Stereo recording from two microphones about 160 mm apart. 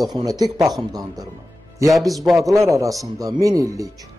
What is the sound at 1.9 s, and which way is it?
Speech, centre (ahead or behind).